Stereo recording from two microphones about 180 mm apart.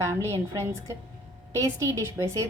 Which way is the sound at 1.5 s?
15° right (ahead or behind).